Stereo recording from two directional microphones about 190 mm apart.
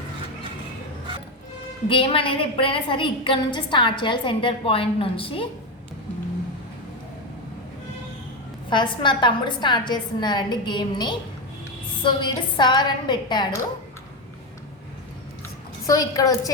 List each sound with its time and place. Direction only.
1.9 s a woman's voice: 25° left (ahead or behind)
8.7 s a woman's voice: 25° left (ahead or behind)
15.9 s a woman's voice: 20° left (ahead or behind)